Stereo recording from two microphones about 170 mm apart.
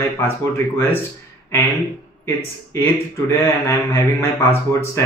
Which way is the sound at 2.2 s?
15° left (ahead or behind).